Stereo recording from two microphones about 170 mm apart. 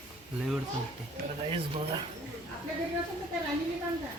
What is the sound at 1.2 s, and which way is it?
Speech, 60° right (ahead or behind).